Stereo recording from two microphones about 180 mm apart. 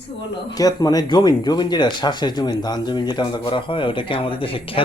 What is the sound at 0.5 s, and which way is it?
Speech, 20° left (ahead or behind).